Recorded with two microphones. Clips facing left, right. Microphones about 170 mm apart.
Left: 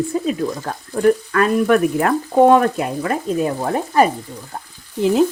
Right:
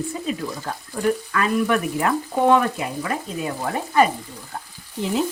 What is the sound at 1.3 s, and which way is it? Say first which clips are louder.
Frying: left 6 dB; 45° left (ahead or behind).